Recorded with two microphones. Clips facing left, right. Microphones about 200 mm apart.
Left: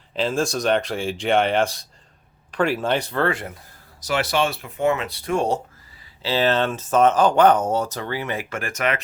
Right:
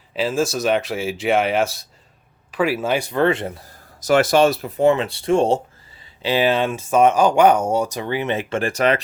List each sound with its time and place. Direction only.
0.1 s speech: 5° right (ahead or behind); by 3.6 s 25° right (ahead or behind)
4.0 s speech: 50° right (ahead or behind); by 5.6 s 25° right (ahead or behind)
6.2 s speech: 15° right (ahead or behind); by 9.0 s 30° right (ahead or behind)